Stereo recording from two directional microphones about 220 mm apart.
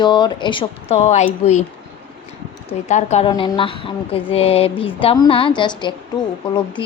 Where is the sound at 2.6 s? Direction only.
30° left (ahead or behind).